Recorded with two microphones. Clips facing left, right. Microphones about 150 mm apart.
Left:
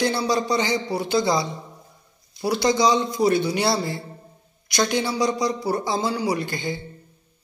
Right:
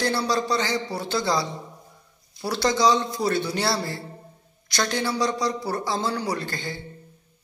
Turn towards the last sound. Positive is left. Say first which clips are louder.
# left 4 dB
turn(degrees=15)  # may be behind; listen again after turning